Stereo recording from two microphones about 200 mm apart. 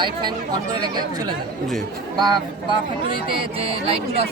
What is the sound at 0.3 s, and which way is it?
Speech, 20° right (ahead or behind).